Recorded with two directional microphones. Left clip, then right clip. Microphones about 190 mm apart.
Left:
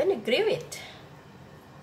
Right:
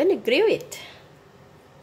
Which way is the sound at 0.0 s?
45° right (ahead or behind).